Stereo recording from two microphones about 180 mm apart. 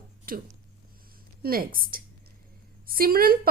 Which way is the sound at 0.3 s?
55° right (ahead or behind).